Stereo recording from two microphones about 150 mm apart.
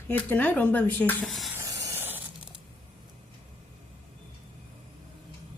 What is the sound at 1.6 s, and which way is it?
Steam, 25° right (ahead or behind).